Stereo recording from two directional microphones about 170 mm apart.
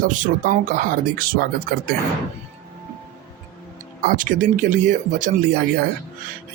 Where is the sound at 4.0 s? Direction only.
50° right (ahead or behind).